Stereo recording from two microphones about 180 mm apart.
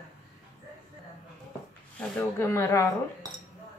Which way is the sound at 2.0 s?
15° left (ahead or behind).